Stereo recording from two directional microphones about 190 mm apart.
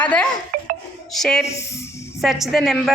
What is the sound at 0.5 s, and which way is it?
Music, 50° right (ahead or behind).